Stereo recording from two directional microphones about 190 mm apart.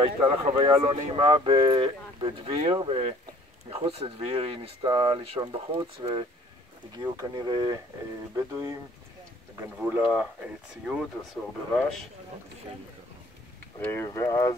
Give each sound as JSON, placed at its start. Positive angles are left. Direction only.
{"t": 0.0, "sound": "speech", "side_deg": -30}
{"t": 9.8, "sound": "speech", "side_deg": -5}
{"t": 13.7, "sound": "speech", "side_deg": 10}